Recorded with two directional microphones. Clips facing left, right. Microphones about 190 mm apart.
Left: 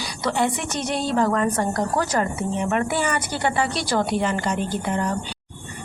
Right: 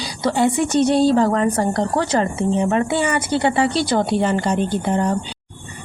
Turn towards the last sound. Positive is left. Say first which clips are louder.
# right 5 dB
turn(degrees=-30)  # may be behind; listen again after turning